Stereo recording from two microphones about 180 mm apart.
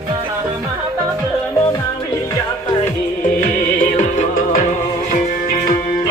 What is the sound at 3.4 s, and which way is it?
Music, 45° left (ahead or behind).